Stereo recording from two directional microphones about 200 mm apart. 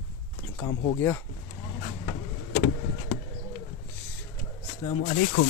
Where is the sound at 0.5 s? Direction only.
15° left (ahead or behind).